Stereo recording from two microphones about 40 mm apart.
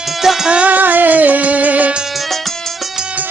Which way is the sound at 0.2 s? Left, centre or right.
Centre.